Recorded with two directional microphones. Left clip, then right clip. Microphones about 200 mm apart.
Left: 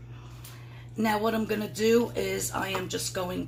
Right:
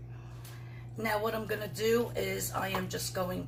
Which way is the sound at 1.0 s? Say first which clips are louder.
Left 5 dB; 45° left (ahead or behind).